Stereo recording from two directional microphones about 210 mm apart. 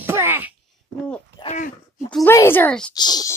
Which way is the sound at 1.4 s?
35° left (ahead or behind).